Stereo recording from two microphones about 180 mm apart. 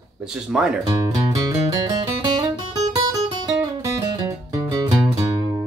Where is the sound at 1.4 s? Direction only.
20° right (ahead or behind).